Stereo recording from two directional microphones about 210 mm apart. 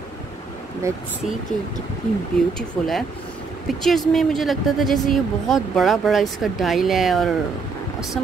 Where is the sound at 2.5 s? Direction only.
Centre (ahead or behind).